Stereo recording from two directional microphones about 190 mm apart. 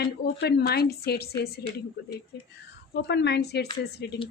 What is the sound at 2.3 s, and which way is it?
A woman's voice, 60° left (ahead or behind).